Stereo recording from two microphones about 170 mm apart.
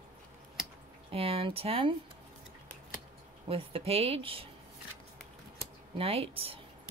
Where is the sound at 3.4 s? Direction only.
35° right (ahead or behind).